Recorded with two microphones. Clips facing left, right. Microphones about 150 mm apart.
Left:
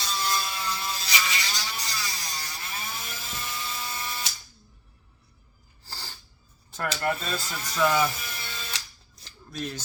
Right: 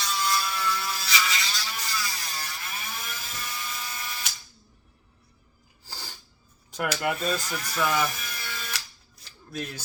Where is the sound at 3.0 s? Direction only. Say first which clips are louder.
Even; 25° left (ahead or behind).